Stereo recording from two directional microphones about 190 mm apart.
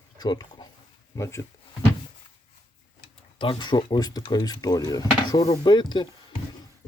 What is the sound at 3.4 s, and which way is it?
Speech, 25° left (ahead or behind).